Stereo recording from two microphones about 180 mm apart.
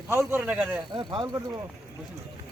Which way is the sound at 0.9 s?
25° right (ahead or behind).